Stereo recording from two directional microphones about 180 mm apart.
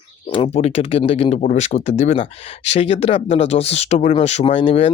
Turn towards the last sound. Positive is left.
turn(degrees=30)  # may be behind; listen again after turning